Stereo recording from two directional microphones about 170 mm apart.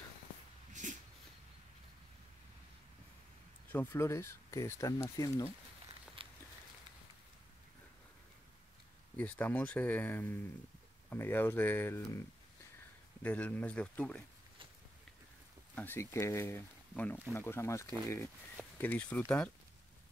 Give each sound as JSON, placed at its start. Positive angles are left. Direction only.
{"t": 0.8, "sound": "a sound", "side_deg": -45}
{"t": 3.6, "sound": "speech", "side_deg": 10}
{"t": 6.2, "sound": "a sound", "side_deg": -30}
{"t": 9.1, "sound": "speech", "side_deg": 10}
{"t": 13.2, "sound": "speech", "side_deg": 10}
{"t": 15.7, "sound": "speech", "side_deg": 10}